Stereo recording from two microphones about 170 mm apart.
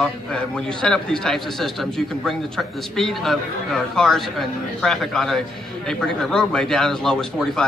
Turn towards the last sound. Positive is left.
turn(degrees=5)  # may be behind; listen again after turning